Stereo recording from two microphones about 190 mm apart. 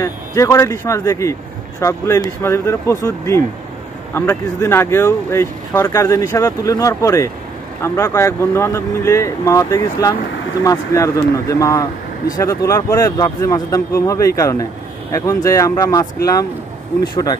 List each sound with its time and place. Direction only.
0.0 s speech: 15° left (ahead or behind)
17.1 s speech: 20° left (ahead or behind)